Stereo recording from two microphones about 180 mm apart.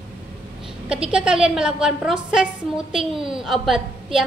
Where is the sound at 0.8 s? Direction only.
5° right (ahead or behind).